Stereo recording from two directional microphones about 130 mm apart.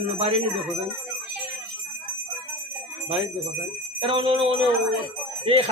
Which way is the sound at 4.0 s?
45° right (ahead or behind).